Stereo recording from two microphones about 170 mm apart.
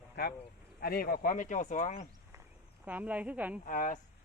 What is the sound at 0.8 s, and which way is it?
Speech, 60° left (ahead or behind).